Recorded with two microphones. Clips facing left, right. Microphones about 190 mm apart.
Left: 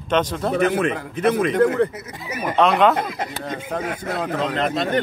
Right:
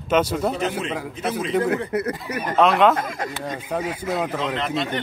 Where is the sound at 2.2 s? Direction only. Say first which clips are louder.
Left 2 dB; 5° left (ahead or behind).